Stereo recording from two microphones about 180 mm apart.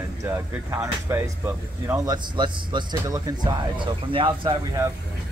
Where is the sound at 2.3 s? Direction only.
25° right (ahead or behind).